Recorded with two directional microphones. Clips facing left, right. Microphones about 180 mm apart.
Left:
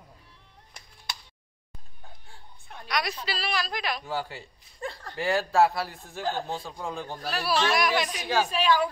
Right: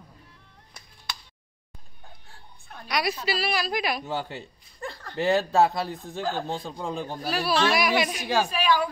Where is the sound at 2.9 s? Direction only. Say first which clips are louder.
Right 4 dB; 5° right (ahead or behind).